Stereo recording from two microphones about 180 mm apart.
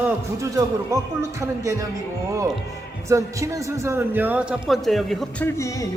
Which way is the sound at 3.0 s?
15° right (ahead or behind).